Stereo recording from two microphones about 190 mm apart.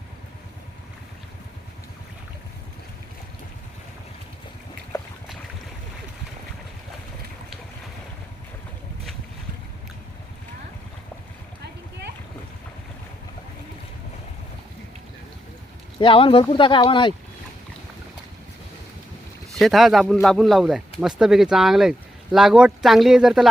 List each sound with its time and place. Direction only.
11.6 s a sound: 60° right (ahead or behind)
16.0 s speech: 25° left (ahead or behind)
19.5 s speech: centre (ahead or behind)